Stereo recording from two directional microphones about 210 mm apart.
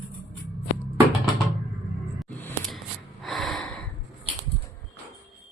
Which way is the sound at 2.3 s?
5° left (ahead or behind).